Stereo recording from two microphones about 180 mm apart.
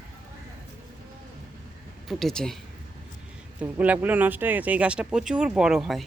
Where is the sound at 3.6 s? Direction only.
10° right (ahead or behind).